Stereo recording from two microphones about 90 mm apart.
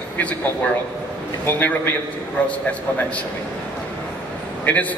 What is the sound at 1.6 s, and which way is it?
Speech, 20° left (ahead or behind).